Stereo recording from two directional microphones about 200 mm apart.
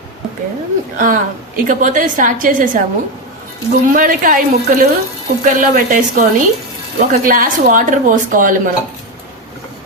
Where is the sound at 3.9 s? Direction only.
45° right (ahead or behind).